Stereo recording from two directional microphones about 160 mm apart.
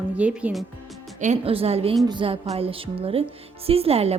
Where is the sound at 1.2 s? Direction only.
50° right (ahead or behind).